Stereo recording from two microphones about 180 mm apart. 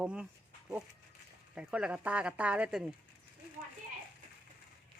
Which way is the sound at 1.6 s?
5° right (ahead or behind).